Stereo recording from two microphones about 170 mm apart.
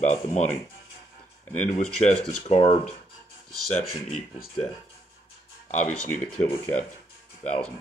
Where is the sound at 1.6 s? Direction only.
40° left (ahead or behind).